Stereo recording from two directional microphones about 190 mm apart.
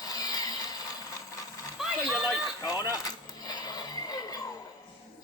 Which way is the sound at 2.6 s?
20° left (ahead or behind).